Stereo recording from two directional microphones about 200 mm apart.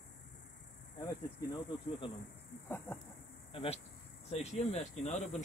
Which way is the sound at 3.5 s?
30° left (ahead or behind).